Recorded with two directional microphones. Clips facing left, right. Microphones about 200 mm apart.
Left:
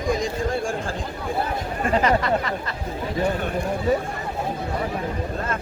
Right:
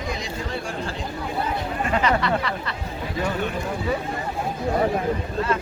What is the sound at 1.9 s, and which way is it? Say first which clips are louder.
Speech: left 2 dB; 45° left (ahead or behind).